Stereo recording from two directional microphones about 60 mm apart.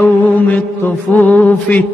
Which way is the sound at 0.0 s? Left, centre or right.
Left.